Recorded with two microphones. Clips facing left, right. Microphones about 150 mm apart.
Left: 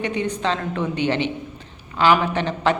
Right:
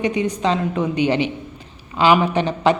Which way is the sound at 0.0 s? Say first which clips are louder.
Right 4 dB; 10° right (ahead or behind).